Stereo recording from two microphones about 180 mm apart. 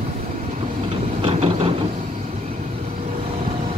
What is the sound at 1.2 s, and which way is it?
Train, 35° right (ahead or behind).